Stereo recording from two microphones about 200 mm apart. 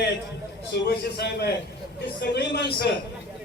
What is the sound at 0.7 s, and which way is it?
A man's voice, 55° left (ahead or behind).